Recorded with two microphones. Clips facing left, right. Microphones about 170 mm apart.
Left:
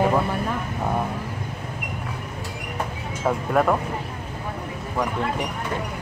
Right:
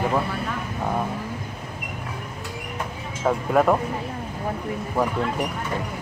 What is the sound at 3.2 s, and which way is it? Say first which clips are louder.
Speech: right 1 dB; 5° right (ahead or behind).